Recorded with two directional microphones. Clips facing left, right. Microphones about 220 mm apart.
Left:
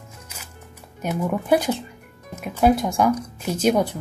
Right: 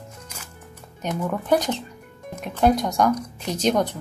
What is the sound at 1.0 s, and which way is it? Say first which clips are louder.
Speech: left 2 dB; 10° left (ahead or behind).